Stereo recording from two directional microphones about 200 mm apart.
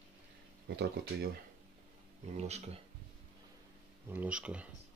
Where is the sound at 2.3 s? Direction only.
35° right (ahead or behind).